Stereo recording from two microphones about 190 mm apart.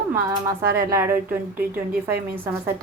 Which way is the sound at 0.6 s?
50° right (ahead or behind).